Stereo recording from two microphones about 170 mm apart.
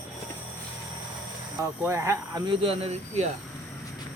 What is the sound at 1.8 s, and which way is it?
Speech, 15° right (ahead or behind).